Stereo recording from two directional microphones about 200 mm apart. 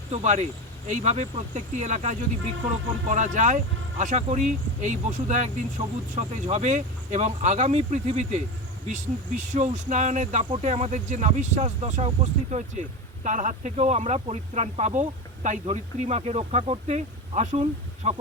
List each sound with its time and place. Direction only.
0.1 s speech: 35° right (ahead or behind)